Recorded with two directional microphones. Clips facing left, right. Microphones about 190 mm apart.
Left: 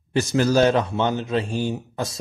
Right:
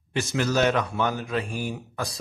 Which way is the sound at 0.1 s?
35° left (ahead or behind).